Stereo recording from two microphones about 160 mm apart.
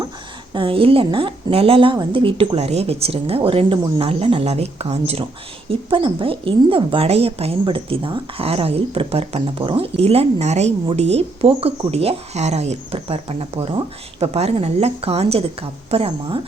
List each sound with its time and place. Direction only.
0.5 s speech: 35° right (ahead or behind)